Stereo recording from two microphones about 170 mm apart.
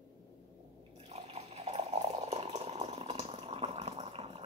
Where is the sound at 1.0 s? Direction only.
40° right (ahead or behind).